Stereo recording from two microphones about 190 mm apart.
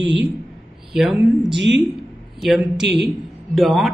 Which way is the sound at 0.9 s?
Centre (ahead or behind).